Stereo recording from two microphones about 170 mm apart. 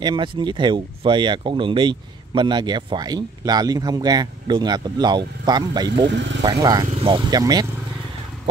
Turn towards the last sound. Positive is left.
turn(degrees=-25)  # may be behind; listen again after turning